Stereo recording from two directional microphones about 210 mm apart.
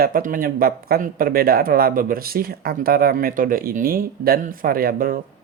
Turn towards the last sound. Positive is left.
turn(degrees=-45)  # may be behind; listen again after turning